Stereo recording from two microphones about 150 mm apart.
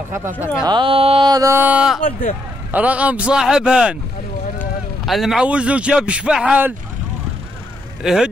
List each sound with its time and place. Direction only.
0.1 s a man's voice: 15° right (ahead or behind)
0.7 s carnatic music: 35° right (ahead or behind)
1.3 s a man's voice: 20° right (ahead or behind)
2.0 s speech: 65° left (ahead or behind)
2.7 s a man's voice: 10° right (ahead or behind)
5.0 s a man's voice: centre (ahead or behind)
8.0 s speech: 5° right (ahead or behind)